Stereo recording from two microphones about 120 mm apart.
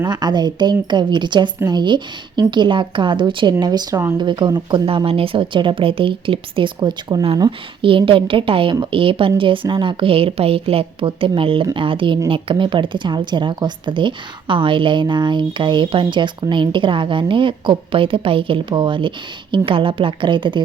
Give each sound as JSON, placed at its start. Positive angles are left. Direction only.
{"t": 0.0, "sound": "speech", "side_deg": -35}